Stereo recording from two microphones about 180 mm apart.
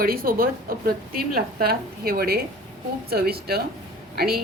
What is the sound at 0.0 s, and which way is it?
A woman's voice, 55° right (ahead or behind).